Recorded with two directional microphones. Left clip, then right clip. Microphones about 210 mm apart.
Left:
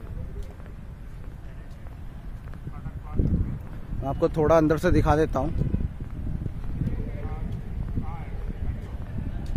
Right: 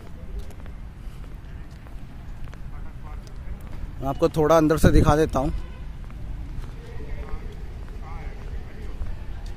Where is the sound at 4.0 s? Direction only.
20° right (ahead or behind).